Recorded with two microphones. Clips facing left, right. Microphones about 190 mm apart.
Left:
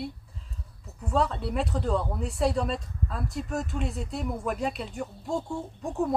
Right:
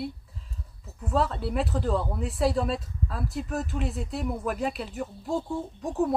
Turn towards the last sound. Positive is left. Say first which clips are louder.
# right 2 dB
turn(degrees=0)  # may be behind; listen again after turning